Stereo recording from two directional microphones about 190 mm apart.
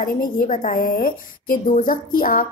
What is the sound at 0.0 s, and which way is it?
A woman's voice, 45° left (ahead or behind).